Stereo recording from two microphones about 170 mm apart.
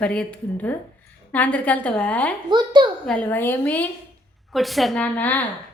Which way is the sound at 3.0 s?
5° left (ahead or behind).